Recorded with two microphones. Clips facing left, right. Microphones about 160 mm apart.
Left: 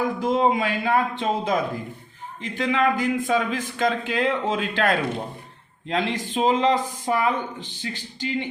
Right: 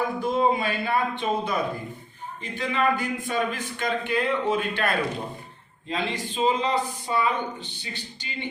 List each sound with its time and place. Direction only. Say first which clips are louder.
0.2 s a man's voice: left 2 dB; 90° left